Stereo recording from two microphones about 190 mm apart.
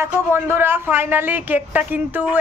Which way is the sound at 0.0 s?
10° right (ahead or behind).